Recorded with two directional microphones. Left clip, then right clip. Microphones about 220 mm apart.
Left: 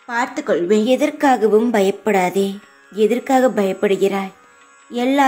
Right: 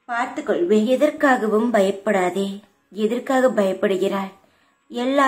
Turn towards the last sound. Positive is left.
turn(degrees=25)  # may be behind; listen again after turning